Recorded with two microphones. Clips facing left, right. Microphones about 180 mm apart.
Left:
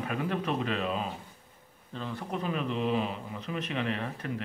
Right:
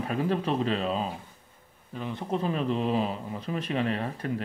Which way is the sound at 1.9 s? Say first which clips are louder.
Right 2 dB; 15° right (ahead or behind).